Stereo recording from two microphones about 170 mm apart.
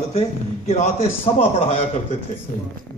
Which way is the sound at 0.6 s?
45° left (ahead or behind).